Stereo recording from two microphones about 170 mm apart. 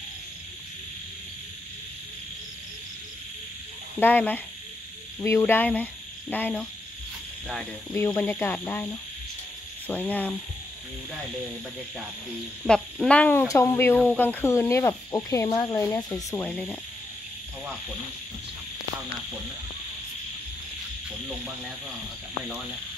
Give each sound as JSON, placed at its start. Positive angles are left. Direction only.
{"t": 4.0, "sound": "speech", "side_deg": 10}
{"t": 8.2, "sound": "speech", "side_deg": 10}
{"t": 12.6, "sound": "speech", "side_deg": 5}